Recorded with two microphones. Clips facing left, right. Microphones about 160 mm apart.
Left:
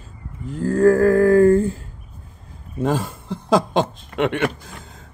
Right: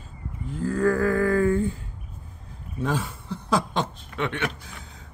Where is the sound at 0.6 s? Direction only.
40° left (ahead or behind).